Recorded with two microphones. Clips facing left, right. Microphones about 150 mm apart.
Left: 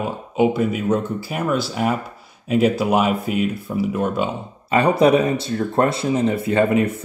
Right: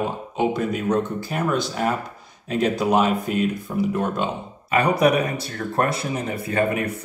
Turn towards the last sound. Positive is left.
turn(degrees=25)  # may be behind; listen again after turning